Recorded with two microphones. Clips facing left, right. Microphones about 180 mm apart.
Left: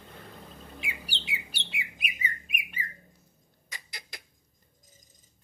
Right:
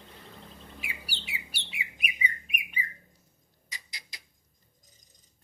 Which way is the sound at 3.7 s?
55° left (ahead or behind).